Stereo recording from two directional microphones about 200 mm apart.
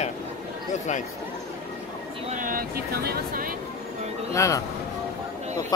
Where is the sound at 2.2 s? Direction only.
40° right (ahead or behind).